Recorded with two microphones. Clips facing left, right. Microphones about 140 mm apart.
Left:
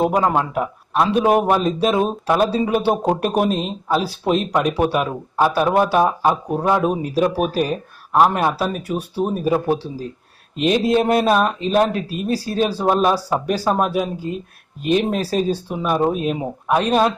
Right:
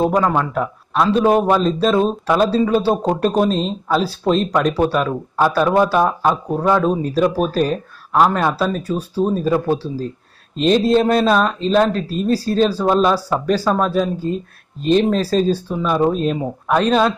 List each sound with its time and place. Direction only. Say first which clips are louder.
0.2 s a man's voice: right 1 dB; 20° left (ahead or behind)